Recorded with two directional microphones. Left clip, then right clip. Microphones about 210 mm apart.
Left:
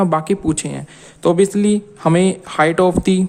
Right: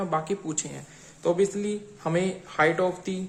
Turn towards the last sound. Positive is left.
turn(degrees=50)  # may be behind; listen again after turning